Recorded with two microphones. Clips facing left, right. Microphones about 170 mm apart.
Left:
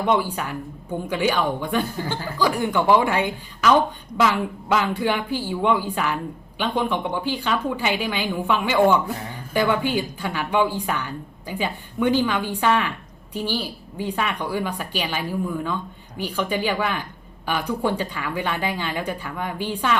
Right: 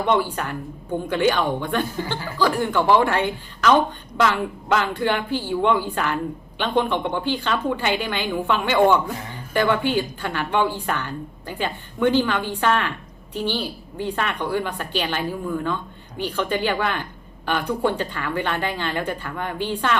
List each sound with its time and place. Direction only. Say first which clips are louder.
0.1 s a woman's voice: right 1 dB; 10° left (ahead or behind)